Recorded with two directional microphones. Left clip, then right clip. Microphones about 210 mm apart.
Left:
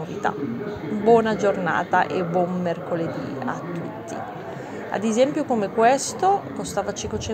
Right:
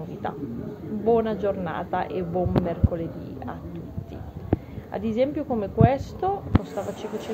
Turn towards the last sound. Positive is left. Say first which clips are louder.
# left 5 dB
turn(degrees=15)  # may be behind; listen again after turning